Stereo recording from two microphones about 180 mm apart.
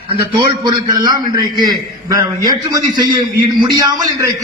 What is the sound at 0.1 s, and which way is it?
A man's voice, 30° right (ahead or behind).